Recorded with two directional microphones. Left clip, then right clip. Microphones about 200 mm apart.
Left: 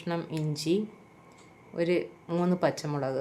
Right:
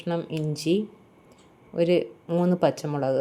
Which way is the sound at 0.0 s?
5° right (ahead or behind).